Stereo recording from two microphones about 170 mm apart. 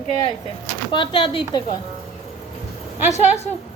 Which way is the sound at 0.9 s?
30° left (ahead or behind).